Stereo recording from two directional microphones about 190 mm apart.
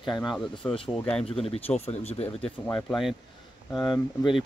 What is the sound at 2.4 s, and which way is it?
Speech, 5° left (ahead or behind).